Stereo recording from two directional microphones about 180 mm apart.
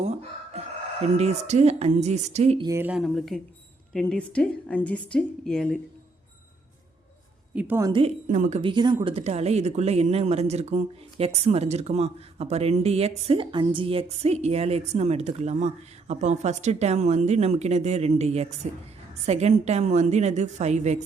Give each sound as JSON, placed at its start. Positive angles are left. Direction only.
{"t": 0.0, "sound": "speech", "side_deg": -40}
{"t": 2.6, "sound": "a woman's voice", "side_deg": -10}
{"t": 3.0, "sound": "a woman's voice", "side_deg": 0}
{"t": 7.5, "sound": "a woman's voice", "side_deg": -10}
{"t": 7.9, "sound": "speech", "side_deg": -35}
{"t": 8.7, "sound": "speech", "side_deg": -25}